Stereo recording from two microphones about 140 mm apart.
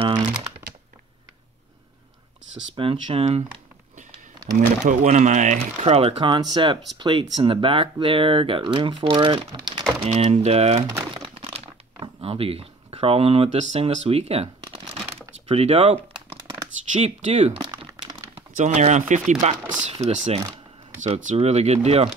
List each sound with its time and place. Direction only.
2.7 s speech: 40° right (ahead or behind)
4.6 s speech: 65° right (ahead or behind); by 6.3 s 45° right (ahead or behind)
6.3 s speech: 35° right (ahead or behind)
10.0 s speech: 50° right (ahead or behind)
11.2 s crumpling: 45° right (ahead or behind)
12.2 s speech: 45° right (ahead or behind)
17.6 s crumpling: 35° right (ahead or behind)
18.6 s speech: 60° right (ahead or behind)